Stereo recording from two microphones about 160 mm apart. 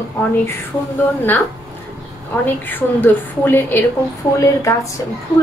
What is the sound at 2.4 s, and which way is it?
A woman's voice, 10° left (ahead or behind).